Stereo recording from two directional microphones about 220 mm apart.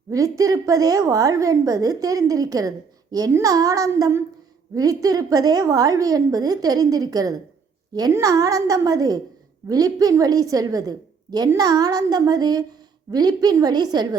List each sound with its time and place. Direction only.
0.1 s a woman's voice: 15° right (ahead or behind)